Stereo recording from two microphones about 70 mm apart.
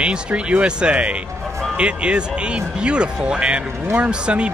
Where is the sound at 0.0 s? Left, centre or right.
Centre.